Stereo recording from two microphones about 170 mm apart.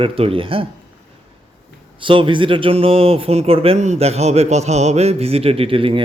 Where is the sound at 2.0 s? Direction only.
30° right (ahead or behind).